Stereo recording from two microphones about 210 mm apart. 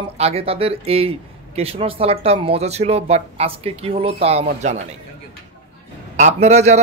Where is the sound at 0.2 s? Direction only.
30° right (ahead or behind).